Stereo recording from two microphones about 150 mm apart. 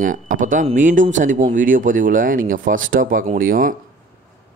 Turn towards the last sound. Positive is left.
turn(degrees=-70)  # may be behind; listen again after turning